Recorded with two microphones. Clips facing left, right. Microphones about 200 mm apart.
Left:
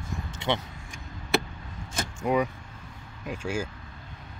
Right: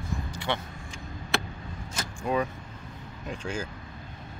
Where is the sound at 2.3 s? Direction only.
15° left (ahead or behind).